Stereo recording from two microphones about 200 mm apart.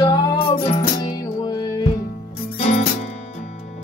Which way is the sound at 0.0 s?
20° left (ahead or behind).